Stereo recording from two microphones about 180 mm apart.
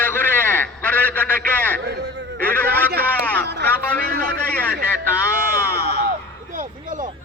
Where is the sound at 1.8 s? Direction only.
65° right (ahead or behind).